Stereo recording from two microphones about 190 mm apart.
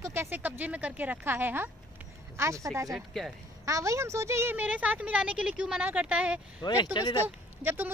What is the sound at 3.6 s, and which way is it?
Speech, 15° right (ahead or behind).